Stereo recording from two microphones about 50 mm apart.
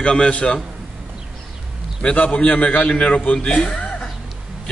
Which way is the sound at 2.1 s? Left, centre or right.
Left.